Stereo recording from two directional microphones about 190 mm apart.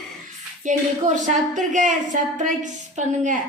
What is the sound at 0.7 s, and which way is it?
A woman's voice, 40° right (ahead or behind).